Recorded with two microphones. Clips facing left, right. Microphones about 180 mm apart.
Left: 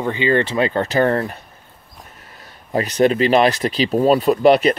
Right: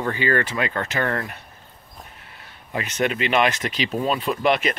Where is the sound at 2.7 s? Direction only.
35° left (ahead or behind).